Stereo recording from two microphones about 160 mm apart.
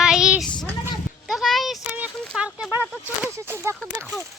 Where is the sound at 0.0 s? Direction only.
5° right (ahead or behind).